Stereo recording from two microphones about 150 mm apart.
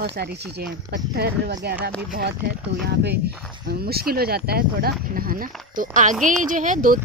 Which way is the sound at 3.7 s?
90° right.